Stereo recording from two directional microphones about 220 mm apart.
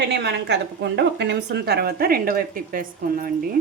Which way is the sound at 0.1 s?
50° right (ahead or behind).